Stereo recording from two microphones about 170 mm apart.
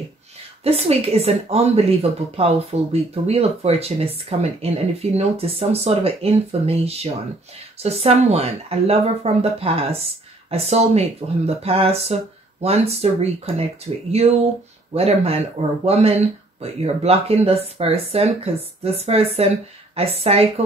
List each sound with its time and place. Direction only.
0.7 s speech: 35° right (ahead or behind)